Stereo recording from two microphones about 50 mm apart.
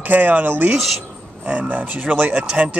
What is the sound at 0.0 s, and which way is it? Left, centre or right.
Speech, right.